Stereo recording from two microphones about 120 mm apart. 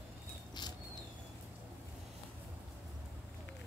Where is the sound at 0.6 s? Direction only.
40° left (ahead or behind).